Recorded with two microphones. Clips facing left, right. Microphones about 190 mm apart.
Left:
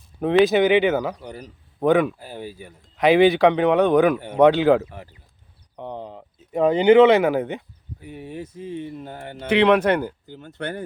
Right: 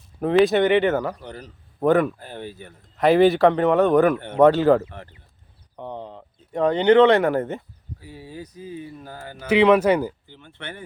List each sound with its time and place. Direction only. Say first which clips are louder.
0.2 s a man's voice: left 1 dB; centre (ahead or behind)
4.1 s speech: even; 10° left (ahead or behind)
4.4 s a man's voice: even; centre (ahead or behind)
8.0 s speech: left 4 dB; 25° left (ahead or behind)
9.5 s speech: right 1 dB; 5° right (ahead or behind)
10.2 s speech: left 7 dB; 40° left (ahead or behind)